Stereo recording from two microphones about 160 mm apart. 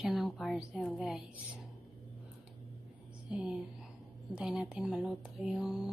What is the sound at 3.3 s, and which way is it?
Speech, 5° right (ahead or behind).